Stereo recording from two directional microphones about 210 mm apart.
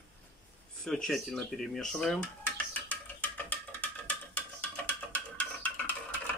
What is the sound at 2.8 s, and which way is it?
Music, 5° left (ahead or behind).